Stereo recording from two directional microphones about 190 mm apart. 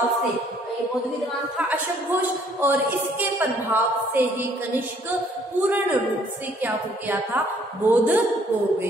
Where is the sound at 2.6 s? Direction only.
10° right (ahead or behind).